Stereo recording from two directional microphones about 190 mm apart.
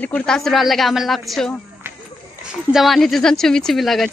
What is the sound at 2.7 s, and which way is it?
Speech, centre (ahead or behind).